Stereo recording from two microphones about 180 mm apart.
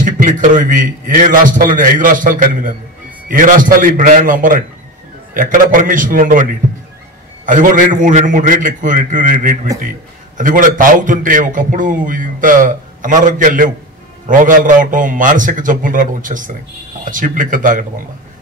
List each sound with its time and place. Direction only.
0.0 s a man's voice: 45° right (ahead or behind)
7.4 s a man's voice: 45° right (ahead or behind)